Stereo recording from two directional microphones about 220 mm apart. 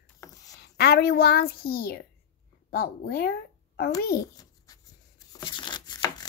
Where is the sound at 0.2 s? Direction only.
15° left (ahead or behind).